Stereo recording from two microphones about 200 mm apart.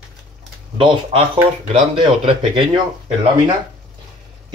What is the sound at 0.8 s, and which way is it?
Speech, 25° right (ahead or behind).